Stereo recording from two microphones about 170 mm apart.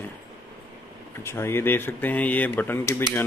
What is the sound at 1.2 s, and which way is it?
Speech, 15° left (ahead or behind).